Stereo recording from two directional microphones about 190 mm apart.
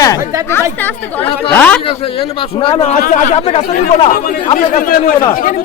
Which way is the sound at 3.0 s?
45° left (ahead or behind).